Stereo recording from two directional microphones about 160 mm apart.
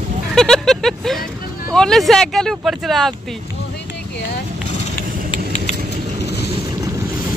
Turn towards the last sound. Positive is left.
turn(degrees=45)  # may be behind; listen again after turning